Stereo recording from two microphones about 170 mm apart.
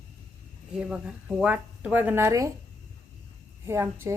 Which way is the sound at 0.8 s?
5° right (ahead or behind).